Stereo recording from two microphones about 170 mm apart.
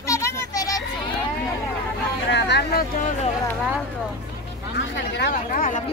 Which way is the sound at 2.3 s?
85° left.